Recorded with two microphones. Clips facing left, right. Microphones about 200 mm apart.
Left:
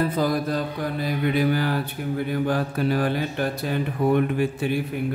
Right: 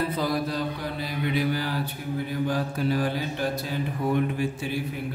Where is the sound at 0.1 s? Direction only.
50° left (ahead or behind).